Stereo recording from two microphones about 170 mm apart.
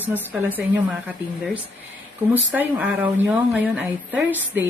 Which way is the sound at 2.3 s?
10° right (ahead or behind).